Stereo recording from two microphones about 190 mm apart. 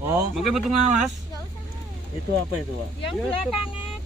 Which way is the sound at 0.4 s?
Centre (ahead or behind).